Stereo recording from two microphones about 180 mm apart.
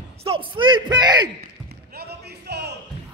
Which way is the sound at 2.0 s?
65° right (ahead or behind).